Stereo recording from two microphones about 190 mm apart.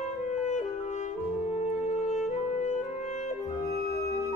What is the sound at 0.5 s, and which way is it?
Music, 40° left (ahead or behind).